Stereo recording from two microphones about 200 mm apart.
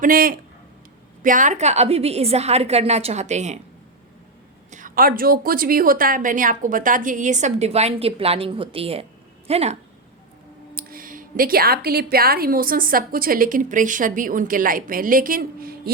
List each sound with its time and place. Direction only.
0.0 s a woman's voice: 45° right (ahead or behind)
4.7 s a woman's voice: 45° right (ahead or behind)
10.8 s a woman's voice: 45° right (ahead or behind)